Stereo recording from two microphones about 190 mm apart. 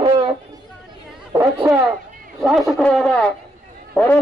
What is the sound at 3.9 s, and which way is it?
Run, 10° left (ahead or behind).